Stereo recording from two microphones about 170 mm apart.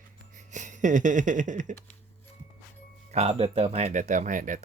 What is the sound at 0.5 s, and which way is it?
Speech, 45° right (ahead or behind).